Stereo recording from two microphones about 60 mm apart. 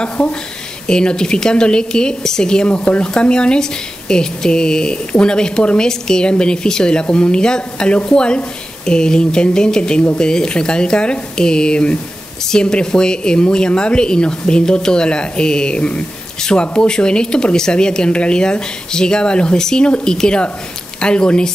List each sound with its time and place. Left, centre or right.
0.2 s speech: left
0.8 s a woman's voice: centre